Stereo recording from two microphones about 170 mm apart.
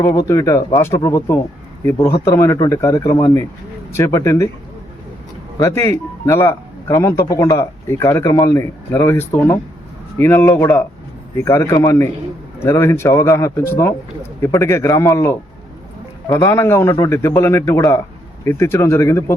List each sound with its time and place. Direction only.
0.0 s speech: 20° left (ahead or behind)
5.5 s speech: 15° left (ahead or behind)